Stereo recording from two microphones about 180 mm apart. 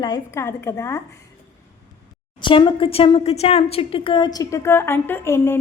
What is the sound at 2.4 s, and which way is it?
A woman's voice, 25° left (ahead or behind).